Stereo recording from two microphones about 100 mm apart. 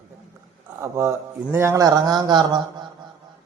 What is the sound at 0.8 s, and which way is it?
Speech, 30° right (ahead or behind).